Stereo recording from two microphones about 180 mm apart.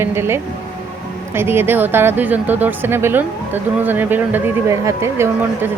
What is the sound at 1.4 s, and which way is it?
Speech, 10° right (ahead or behind).